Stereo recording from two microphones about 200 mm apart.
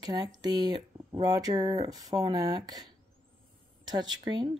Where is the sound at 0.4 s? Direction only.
20° right (ahead or behind).